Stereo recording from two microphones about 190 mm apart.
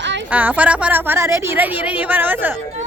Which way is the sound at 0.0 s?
70° right (ahead or behind).